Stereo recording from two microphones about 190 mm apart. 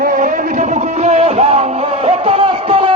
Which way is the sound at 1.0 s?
35° right (ahead or behind).